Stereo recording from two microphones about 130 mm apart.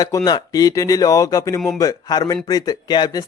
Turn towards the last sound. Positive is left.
turn(degrees=30)  # may be behind; listen again after turning